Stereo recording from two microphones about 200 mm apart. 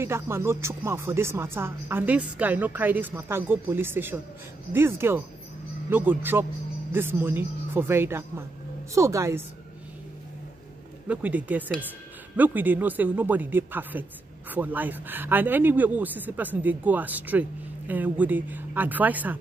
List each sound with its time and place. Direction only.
0.0 s speech: 10° right (ahead or behind)
11.1 s speech: 5° right (ahead or behind)